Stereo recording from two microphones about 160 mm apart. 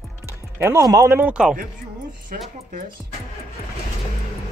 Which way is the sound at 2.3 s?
60° right (ahead or behind).